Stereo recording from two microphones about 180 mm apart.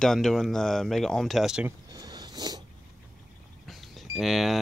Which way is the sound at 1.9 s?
20° right (ahead or behind).